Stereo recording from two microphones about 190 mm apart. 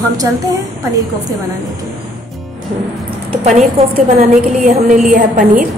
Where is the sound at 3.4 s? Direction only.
40° right (ahead or behind).